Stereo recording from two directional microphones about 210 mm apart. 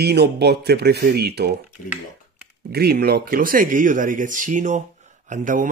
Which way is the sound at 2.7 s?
50° right (ahead or behind).